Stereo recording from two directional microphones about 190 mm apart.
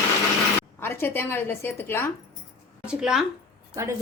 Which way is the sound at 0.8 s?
10° left (ahead or behind).